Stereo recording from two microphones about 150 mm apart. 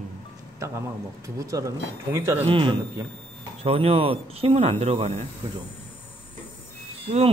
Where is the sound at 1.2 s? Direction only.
20° right (ahead or behind).